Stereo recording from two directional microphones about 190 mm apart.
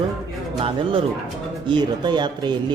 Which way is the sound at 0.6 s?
25° right (ahead or behind).